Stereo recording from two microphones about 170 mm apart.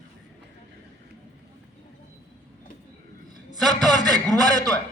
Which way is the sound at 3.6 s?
Centre (ahead or behind).